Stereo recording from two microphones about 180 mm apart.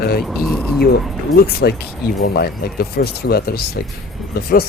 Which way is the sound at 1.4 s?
60° left (ahead or behind).